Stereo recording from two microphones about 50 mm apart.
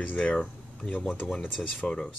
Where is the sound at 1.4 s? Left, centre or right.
Left.